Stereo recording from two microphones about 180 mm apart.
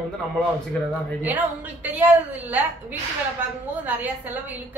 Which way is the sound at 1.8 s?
10° right (ahead or behind).